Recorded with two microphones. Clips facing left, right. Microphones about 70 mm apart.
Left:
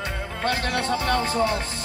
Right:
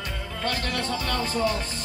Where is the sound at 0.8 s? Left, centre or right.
Left.